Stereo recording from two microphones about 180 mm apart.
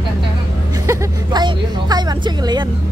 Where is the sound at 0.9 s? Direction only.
20° right (ahead or behind).